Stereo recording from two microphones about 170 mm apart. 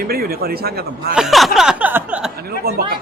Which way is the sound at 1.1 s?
Centre (ahead or behind).